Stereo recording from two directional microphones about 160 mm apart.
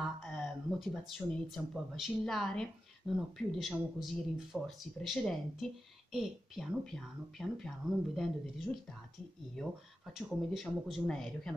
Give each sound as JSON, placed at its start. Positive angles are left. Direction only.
{"t": 0.3, "sound": "speech", "side_deg": 5}
{"t": 10.1, "sound": "speech", "side_deg": 0}